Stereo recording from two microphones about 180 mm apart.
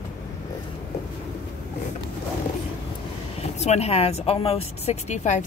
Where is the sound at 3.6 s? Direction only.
35° left (ahead or behind).